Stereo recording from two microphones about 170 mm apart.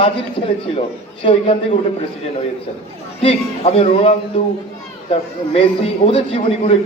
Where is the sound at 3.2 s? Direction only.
35° left (ahead or behind).